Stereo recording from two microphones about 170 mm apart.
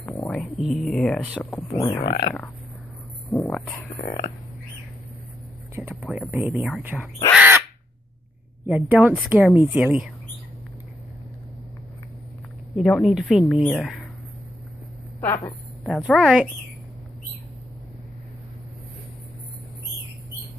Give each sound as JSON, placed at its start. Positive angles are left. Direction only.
{"t": 0.0, "sound": "a sound", "side_deg": 10}
{"t": 0.3, "sound": "speech", "side_deg": 0}
{"t": 1.4, "sound": "speech", "side_deg": 10}
{"t": 2.0, "sound": "speech", "side_deg": 30}
{"t": 3.3, "sound": "speech", "side_deg": 15}
{"t": 5.8, "sound": "speech", "side_deg": -5}
{"t": 7.3, "sound": "crow", "side_deg": -10}
{"t": 8.6, "sound": "speech", "side_deg": -5}
{"t": 12.7, "sound": "speech", "side_deg": 0}
{"t": 15.8, "sound": "speech", "side_deg": 0}